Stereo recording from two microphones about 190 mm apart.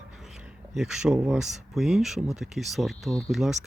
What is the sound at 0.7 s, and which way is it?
Speech, 5° right (ahead or behind).